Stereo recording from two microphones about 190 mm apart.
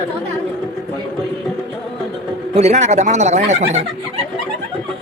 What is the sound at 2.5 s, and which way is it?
Speech, 35° right (ahead or behind).